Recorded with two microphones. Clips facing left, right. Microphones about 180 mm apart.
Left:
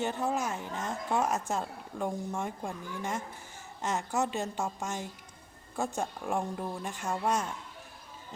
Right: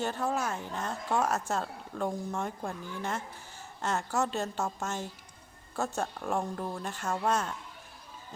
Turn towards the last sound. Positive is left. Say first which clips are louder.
# right 1 dB
turn(degrees=15)  # may be behind; listen again after turning